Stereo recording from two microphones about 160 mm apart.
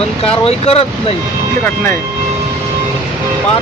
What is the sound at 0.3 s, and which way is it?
Speech, 40° left (ahead or behind).